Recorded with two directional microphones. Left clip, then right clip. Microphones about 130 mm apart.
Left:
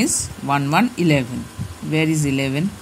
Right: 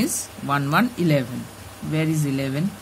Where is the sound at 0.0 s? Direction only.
20° left (ahead or behind).